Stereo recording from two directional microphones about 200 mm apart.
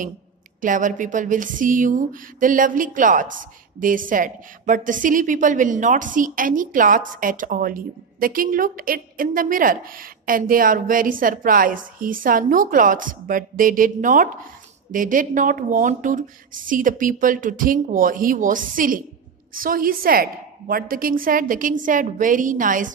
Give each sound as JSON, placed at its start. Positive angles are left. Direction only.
{"t": 0.6, "sound": "a woman's voice", "side_deg": -40}